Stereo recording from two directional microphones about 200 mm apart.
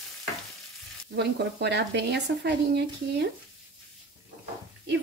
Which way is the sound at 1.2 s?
55° right (ahead or behind).